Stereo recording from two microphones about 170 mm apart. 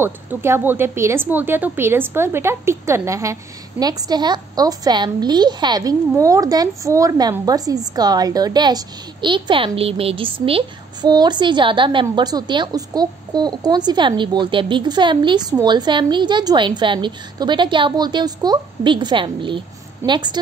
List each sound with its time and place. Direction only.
0.0 s a woman's voice: 15° right (ahead or behind)